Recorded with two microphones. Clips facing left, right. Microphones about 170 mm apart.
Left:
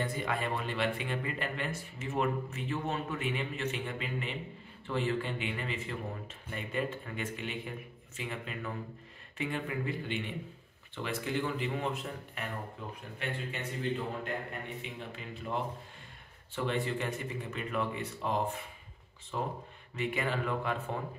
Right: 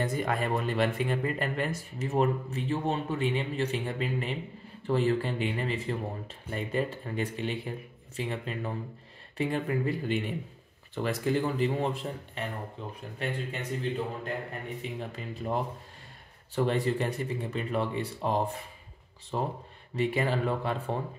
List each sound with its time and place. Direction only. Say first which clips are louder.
0.0 s speech: right 4 dB; 45° right (ahead or behind)
14.8 s speech: right 5 dB; 40° right (ahead or behind)